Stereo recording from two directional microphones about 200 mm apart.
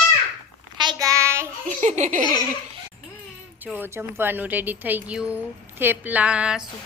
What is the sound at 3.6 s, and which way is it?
A woman's voice, 10° right (ahead or behind).